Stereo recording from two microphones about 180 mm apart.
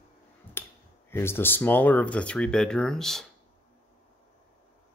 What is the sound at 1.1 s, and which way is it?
Speech, 10° left (ahead or behind).